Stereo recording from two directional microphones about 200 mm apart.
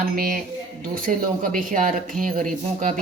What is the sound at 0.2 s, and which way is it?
A woman's voice, 45° right (ahead or behind).